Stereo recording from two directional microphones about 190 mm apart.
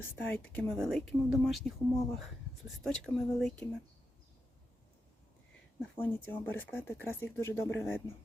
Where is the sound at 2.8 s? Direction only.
Centre (ahead or behind).